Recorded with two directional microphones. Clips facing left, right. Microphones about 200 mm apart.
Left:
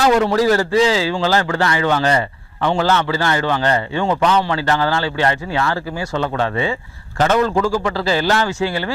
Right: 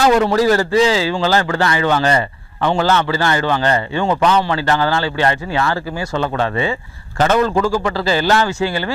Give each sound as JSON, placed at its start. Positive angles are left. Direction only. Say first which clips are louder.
{"t": 0.0, "sound": "a man's voice", "louder": "right 1 dB", "side_deg": -20}